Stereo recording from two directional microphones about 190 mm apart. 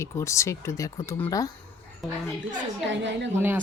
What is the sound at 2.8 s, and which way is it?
Speech, 70° right (ahead or behind).